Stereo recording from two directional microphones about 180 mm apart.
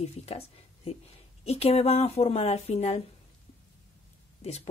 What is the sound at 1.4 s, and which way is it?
Speech, 35° left (ahead or behind).